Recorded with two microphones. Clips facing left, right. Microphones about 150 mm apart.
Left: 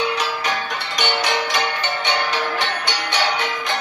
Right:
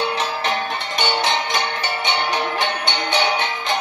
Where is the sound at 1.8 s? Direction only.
15° right (ahead or behind).